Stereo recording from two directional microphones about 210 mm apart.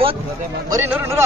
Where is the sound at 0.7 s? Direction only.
10° right (ahead or behind).